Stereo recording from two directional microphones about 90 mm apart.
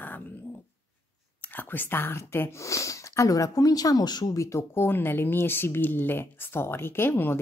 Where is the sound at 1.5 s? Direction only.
25° left (ahead or behind); by 4.3 s 50° left (ahead or behind).